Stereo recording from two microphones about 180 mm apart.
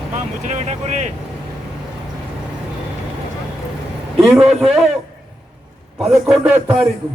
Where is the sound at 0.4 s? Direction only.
40° right (ahead or behind).